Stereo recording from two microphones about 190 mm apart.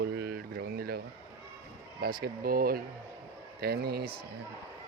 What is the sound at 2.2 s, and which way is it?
Speech, 50° right (ahead or behind).